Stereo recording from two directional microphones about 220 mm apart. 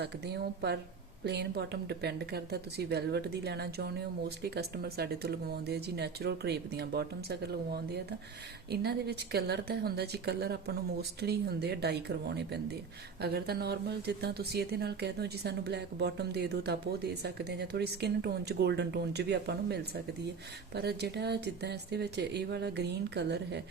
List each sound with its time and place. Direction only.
0.0 s speech: 50° right (ahead or behind)